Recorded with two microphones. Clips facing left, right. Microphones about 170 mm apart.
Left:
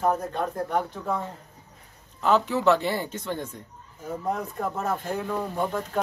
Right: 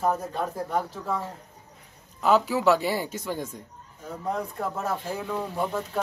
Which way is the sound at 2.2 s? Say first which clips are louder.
Even; 5° right (ahead or behind).